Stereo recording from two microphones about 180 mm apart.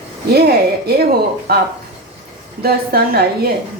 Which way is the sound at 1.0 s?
60° right (ahead or behind).